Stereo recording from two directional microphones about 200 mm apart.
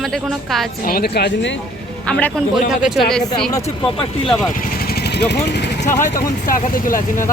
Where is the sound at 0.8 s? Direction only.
50° left (ahead or behind).